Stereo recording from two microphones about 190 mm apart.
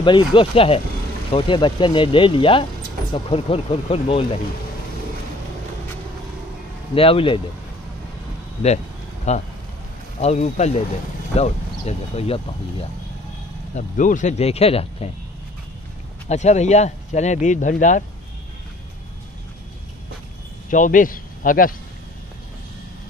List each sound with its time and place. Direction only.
0.0 s speech: 25° left (ahead or behind)
7.0 s speech: 30° left (ahead or behind)
9.3 s speech: 35° left (ahead or behind)
13.7 s speech: 40° left (ahead or behind)
16.3 s speech: 35° left (ahead or behind)
20.7 s speech: 45° left (ahead or behind)